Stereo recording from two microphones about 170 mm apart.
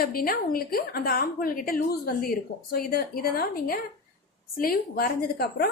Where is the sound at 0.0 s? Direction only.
60° left (ahead or behind).